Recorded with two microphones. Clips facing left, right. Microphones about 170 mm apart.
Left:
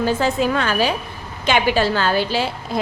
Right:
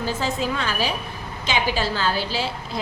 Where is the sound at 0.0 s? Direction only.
60° left (ahead or behind).